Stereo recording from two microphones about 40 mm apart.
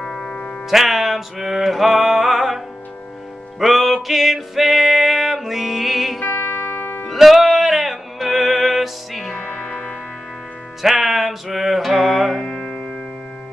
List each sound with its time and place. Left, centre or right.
0.0 s music: centre
6.2 s music: left
7.2 s music: centre